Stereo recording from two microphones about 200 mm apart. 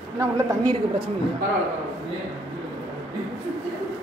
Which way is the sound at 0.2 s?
20° right (ahead or behind).